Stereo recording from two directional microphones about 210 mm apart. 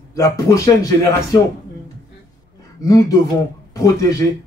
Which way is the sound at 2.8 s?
15° left (ahead or behind).